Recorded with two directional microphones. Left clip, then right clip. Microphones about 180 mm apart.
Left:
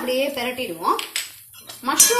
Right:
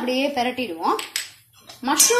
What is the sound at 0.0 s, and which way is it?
Speech, 50° right (ahead or behind).